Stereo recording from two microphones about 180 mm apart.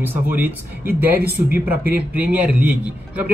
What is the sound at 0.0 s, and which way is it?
A man's voice, 10° right (ahead or behind).